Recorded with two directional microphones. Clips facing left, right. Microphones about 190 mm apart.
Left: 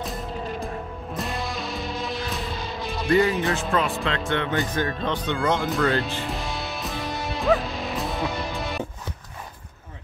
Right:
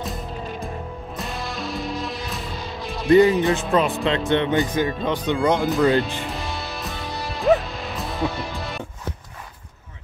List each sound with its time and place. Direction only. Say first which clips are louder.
0.0 s music: even; centre (ahead or behind)
3.1 s speech: right 6 dB; 20° right (ahead or behind)
4.7 s speech: right 3 dB; 5° right (ahead or behind)
5.6 s speech: right 4 dB; centre (ahead or behind)
6.3 s music: even; centre (ahead or behind)